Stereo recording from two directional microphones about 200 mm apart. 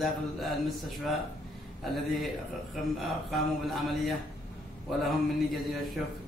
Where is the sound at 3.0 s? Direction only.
Centre (ahead or behind).